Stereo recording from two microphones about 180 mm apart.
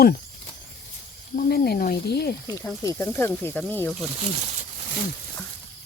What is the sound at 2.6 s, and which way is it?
Speech, 15° left (ahead or behind).